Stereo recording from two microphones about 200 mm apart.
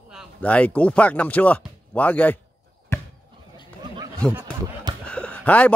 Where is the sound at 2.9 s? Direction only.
15° left (ahead or behind).